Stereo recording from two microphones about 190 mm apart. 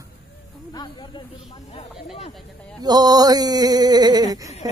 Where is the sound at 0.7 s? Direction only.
20° left (ahead or behind).